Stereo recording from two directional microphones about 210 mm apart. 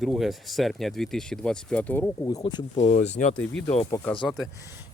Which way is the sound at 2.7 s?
30° left (ahead or behind).